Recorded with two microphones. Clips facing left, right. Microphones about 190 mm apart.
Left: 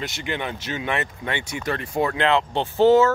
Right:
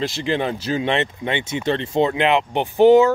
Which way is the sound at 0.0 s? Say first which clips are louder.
Right 7 dB; 30° right (ahead or behind).